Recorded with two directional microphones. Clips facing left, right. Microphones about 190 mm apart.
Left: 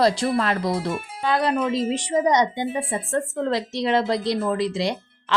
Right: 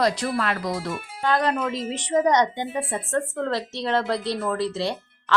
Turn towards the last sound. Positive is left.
turn(degrees=15)  # may be behind; listen again after turning